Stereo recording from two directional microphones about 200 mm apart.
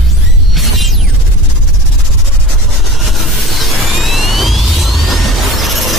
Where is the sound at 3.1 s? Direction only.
Centre (ahead or behind).